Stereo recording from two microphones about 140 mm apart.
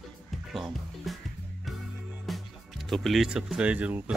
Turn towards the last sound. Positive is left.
turn(degrees=-10)  # may be behind; listen again after turning